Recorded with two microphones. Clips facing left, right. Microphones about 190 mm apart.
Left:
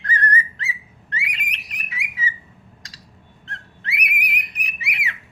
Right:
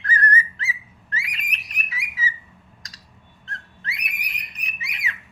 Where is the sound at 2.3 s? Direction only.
30° left (ahead or behind).